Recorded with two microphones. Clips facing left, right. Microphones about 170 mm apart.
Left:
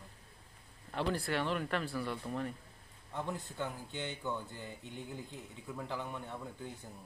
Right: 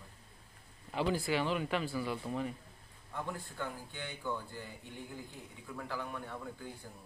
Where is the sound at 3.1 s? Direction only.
20° left (ahead or behind).